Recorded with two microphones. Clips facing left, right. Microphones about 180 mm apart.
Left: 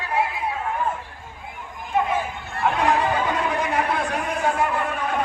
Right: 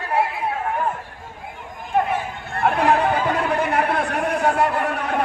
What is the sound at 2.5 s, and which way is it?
Chatter, 55° right (ahead or behind).